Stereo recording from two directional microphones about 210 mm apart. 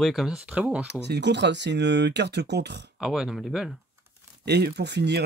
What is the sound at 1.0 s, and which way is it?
Speech, 55° right (ahead or behind).